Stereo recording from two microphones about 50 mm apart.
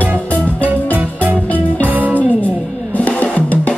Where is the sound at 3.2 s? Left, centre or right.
Left.